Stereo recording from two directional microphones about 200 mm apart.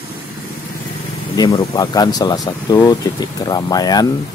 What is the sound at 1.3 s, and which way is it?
Speech, 20° left (ahead or behind).